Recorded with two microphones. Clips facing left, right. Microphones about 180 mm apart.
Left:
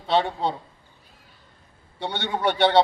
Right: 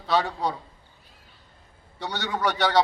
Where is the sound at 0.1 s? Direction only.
25° left (ahead or behind).